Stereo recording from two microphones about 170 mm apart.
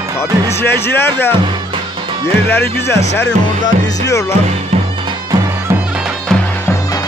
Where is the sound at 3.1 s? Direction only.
90° left.